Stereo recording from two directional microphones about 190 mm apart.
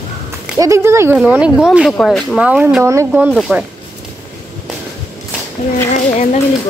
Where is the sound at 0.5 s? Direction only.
15° right (ahead or behind).